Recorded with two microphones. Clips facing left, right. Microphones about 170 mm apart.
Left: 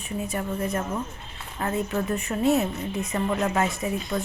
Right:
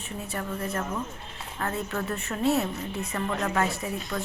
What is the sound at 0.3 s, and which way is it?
A woman's voice, 20° left (ahead or behind).